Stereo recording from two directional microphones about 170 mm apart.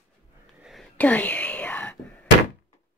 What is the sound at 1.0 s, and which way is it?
Whispering, 10° left (ahead or behind).